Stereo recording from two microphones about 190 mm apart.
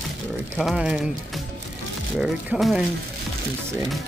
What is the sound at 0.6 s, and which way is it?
Speech, 5° right (ahead or behind).